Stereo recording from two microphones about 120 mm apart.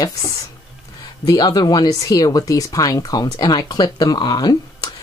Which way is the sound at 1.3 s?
35° left (ahead or behind).